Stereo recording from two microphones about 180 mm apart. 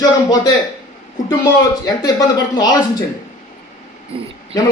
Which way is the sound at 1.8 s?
20° left (ahead or behind).